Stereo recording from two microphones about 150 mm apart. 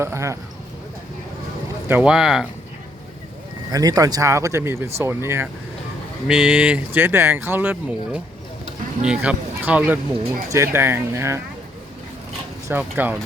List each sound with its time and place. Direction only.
0.0 s speech: 20° right (ahead or behind)
1.9 s speech: 10° right (ahead or behind)
3.7 s speech: 25° right (ahead or behind)
6.2 s speech: 5° right (ahead or behind)
12.6 s speech: 10° right (ahead or behind)